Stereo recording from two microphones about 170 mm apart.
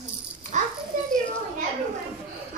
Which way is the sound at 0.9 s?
50° right (ahead or behind).